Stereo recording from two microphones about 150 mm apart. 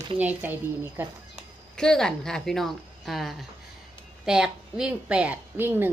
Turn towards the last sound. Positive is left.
turn(degrees=-15)  # may be behind; listen again after turning